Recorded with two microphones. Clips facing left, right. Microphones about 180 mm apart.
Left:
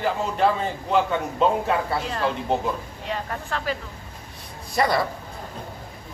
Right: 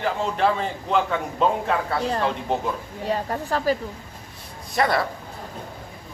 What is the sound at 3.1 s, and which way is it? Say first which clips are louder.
Speech: right 5 dB; 40° right (ahead or behind).